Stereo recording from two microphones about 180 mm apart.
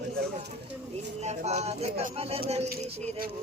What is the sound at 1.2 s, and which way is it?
A woman's voice, 40° right (ahead or behind).